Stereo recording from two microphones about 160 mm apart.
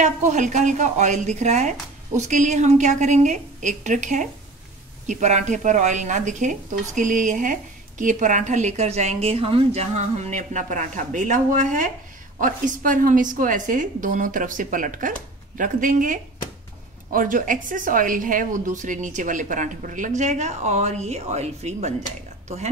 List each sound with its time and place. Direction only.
0.0 s a woman's voice: 50° right (ahead or behind)